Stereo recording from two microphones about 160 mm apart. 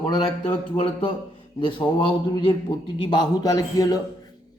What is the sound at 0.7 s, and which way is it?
A man's voice, 35° left (ahead or behind).